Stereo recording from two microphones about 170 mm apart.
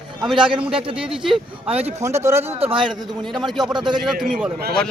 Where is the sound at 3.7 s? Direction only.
25° right (ahead or behind).